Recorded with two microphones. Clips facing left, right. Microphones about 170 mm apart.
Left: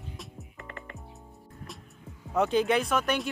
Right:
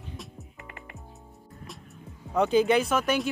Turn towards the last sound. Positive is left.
turn(degrees=0)  # may be behind; listen again after turning